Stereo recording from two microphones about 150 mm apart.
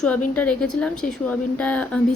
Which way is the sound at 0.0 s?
10° left (ahead or behind).